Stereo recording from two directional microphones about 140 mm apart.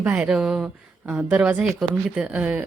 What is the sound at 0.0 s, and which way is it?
A woman's voice, 10° right (ahead or behind).